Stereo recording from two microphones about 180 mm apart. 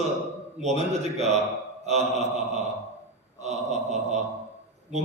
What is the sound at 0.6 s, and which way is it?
A woman's voice, 40° right (ahead or behind).